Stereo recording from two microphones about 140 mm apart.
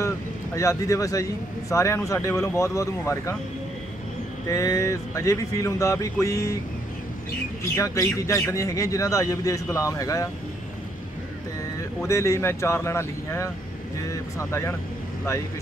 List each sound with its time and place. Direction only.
0.6 s speech: 20° left (ahead or behind)
4.5 s speech: 20° left (ahead or behind)
7.7 s speech: 20° left (ahead or behind)
12.0 s speech: 20° left (ahead or behind)